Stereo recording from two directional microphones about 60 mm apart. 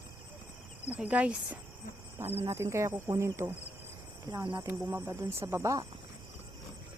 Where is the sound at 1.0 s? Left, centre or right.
Right.